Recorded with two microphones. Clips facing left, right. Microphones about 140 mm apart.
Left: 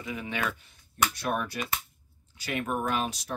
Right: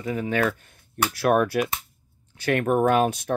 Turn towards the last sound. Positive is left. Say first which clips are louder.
# right 10 dB
turn(degrees=-55)  # may be behind; listen again after turning